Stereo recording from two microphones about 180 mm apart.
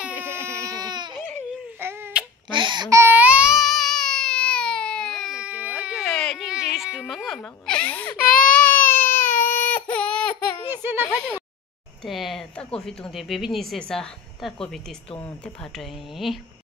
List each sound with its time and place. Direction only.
0.2 s baby cry: 15° right (ahead or behind)
1.8 s a sound: 10° right (ahead or behind)
2.5 s baby cry: 25° right (ahead or behind); by 5.9 s 5° right (ahead or behind)
6.0 s baby cry: 5° left (ahead or behind)
8.2 s baby cry: 50° left (ahead or behind)
9.4 s baby cry: 10° left (ahead or behind)
10.7 s a sound: 10° right (ahead or behind)
11.1 s speech: 15° left (ahead or behind)
12.0 s speech: centre (ahead or behind)
15.1 s speech: 15° left (ahead or behind)
15.6 s speech: centre (ahead or behind)